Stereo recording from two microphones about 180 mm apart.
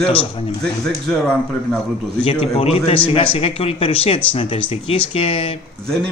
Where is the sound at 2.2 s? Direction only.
35° left (ahead or behind).